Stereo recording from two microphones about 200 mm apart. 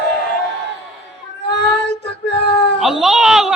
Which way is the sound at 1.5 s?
60° left (ahead or behind).